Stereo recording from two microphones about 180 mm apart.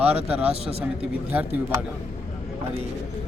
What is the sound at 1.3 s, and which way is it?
Speech, 10° right (ahead or behind).